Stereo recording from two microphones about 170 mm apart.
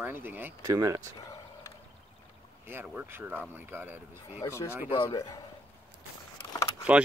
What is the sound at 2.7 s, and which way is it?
Speech, 15° right (ahead or behind).